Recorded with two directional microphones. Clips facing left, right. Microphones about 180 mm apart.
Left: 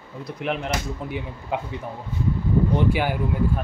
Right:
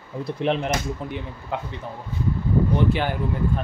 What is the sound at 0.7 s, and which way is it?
Speech, 10° left (ahead or behind).